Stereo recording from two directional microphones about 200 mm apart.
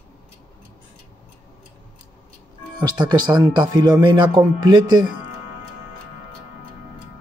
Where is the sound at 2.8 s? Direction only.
20° right (ahead or behind).